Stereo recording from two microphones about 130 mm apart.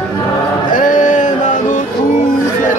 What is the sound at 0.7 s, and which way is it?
Music, 85° left.